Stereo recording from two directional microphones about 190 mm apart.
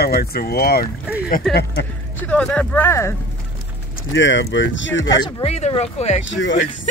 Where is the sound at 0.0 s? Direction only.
55° left (ahead or behind).